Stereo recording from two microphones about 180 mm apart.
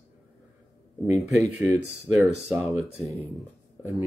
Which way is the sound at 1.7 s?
Centre (ahead or behind).